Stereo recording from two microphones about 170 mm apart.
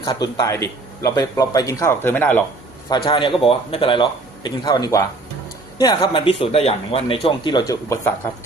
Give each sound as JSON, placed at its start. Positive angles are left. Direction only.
{"t": 0.0, "sound": "speech", "side_deg": 25}
{"t": 2.9, "sound": "speech", "side_deg": 30}